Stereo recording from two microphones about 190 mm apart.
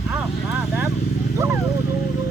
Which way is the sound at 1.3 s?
15° right (ahead or behind).